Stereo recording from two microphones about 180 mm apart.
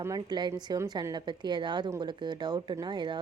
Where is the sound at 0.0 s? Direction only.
20° right (ahead or behind).